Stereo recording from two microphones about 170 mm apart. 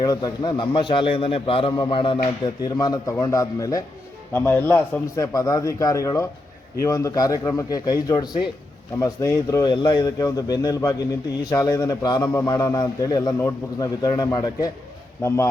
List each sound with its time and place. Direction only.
0.0 s a man's voice: 25° left (ahead or behind)